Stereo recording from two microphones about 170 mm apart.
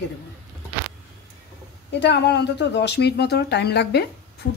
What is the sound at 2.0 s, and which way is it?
Speech, 85° left.